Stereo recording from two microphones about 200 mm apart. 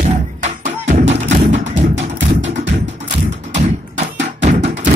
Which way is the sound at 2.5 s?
35° right (ahead or behind).